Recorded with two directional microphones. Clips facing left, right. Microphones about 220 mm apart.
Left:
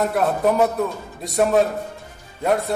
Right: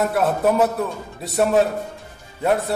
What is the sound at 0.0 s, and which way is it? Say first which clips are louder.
A man's voice: even; centre (ahead or behind).